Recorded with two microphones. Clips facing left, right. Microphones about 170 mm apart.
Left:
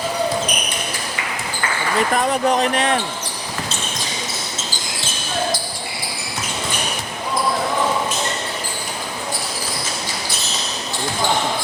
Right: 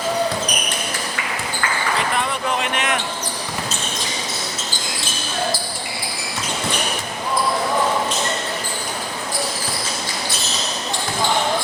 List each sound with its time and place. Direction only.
2.1 s speech: 40° left (ahead or behind)